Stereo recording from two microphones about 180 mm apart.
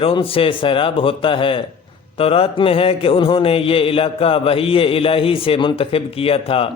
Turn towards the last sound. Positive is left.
turn(degrees=30)  # may be behind; listen again after turning